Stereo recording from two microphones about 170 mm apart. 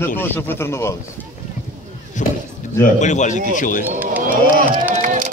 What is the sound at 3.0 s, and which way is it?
Speech, 45° left (ahead or behind).